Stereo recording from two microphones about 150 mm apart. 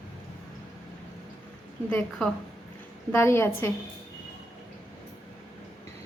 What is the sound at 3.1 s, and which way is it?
Speech, 15° left (ahead or behind).